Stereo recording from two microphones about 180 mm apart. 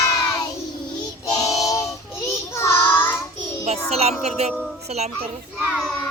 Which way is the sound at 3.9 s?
35° right (ahead or behind).